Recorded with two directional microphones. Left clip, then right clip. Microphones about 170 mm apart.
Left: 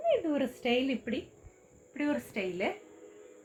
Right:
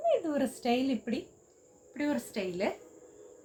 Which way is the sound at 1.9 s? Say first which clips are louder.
Even; 15° left (ahead or behind).